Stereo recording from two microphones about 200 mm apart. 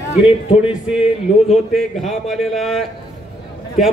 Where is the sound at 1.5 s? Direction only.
Centre (ahead or behind).